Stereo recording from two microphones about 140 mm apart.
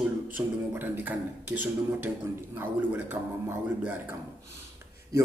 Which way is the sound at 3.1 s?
20° right (ahead or behind).